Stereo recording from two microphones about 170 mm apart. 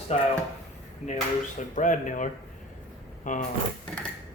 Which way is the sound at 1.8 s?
50° left (ahead or behind).